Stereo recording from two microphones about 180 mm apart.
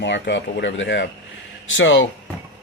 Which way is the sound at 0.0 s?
80° left.